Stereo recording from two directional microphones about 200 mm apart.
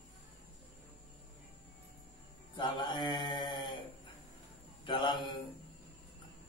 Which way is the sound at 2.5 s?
25° left (ahead or behind).